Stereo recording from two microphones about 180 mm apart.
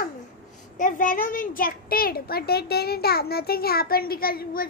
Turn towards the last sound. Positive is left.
turn(degrees=55)  # may be behind; listen again after turning